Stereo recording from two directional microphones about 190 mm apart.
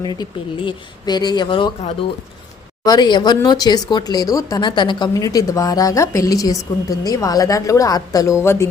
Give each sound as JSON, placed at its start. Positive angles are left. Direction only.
{"t": 0.0, "sound": "speech", "side_deg": 20}
{"t": 2.8, "sound": "a woman's voice", "side_deg": 20}